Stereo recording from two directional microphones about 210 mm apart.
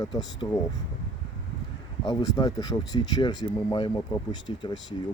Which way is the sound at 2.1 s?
20° left (ahead or behind).